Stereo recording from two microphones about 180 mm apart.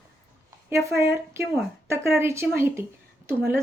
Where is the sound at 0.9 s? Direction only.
15° right (ahead or behind).